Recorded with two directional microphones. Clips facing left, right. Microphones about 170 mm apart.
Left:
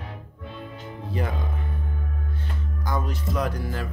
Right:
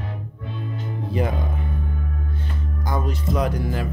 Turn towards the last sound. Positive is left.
turn(degrees=-15)  # may be behind; listen again after turning